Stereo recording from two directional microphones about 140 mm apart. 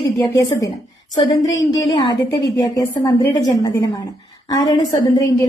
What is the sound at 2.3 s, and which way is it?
A woman's voice, 25° left (ahead or behind).